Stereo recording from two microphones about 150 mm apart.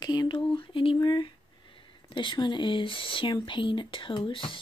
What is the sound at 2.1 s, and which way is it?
Speech, 30° left (ahead or behind).